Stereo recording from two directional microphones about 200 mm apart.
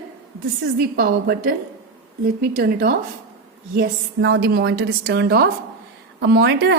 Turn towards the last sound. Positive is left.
turn(degrees=-60)  # may be behind; listen again after turning